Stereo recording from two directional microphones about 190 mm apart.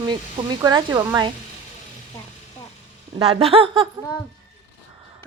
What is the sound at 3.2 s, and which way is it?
Speech, 30° right (ahead or behind).